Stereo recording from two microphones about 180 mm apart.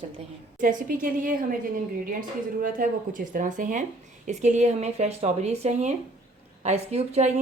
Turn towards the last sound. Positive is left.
turn(degrees=-35)  # may be behind; listen again after turning